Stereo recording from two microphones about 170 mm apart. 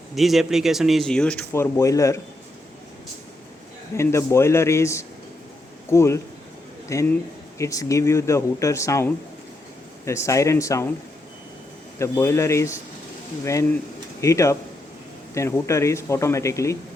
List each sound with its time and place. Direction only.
0.2 s speech: centre (ahead or behind); by 2.1 s 20° left (ahead or behind)
3.9 s a man's voice: 15° left (ahead or behind)
11.9 s speech: 15° left (ahead or behind)